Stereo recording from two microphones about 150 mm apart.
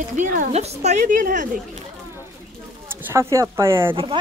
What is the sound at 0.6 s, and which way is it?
Speech, 45° right (ahead or behind).